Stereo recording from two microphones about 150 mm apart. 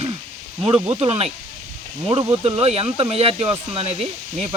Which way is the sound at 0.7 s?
10° right (ahead or behind).